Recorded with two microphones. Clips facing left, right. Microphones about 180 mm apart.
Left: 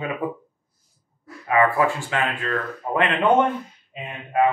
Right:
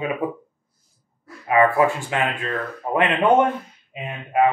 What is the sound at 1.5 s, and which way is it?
Speech, 20° right (ahead or behind).